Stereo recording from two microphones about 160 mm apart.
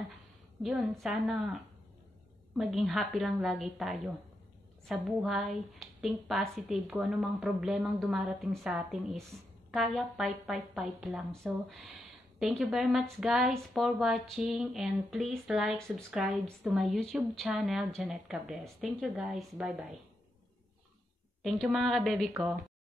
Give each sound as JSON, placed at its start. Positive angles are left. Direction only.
{"t": 0.6, "sound": "speech", "side_deg": 0}
{"t": 2.5, "sound": "speech", "side_deg": 0}
{"t": 21.4, "sound": "speech", "side_deg": 0}